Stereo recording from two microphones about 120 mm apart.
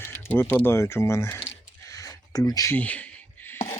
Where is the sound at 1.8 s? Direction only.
25° left (ahead or behind).